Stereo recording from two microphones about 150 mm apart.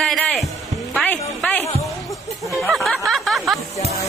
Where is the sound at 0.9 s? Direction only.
10° left (ahead or behind).